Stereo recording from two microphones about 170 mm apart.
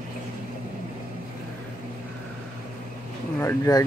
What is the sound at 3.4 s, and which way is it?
Speech, 20° left (ahead or behind).